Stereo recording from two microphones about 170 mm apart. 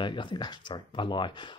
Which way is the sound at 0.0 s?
30° left (ahead or behind).